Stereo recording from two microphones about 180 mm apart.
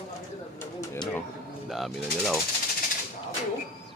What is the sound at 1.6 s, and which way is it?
Speech, centre (ahead or behind).